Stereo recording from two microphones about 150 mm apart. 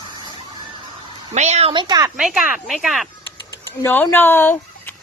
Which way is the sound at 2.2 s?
5° right (ahead or behind).